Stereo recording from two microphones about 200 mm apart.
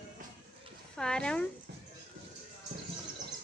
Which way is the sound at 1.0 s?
5° left (ahead or behind).